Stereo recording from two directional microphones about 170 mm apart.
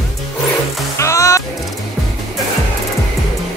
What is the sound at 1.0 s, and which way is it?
Music, 20° left (ahead or behind).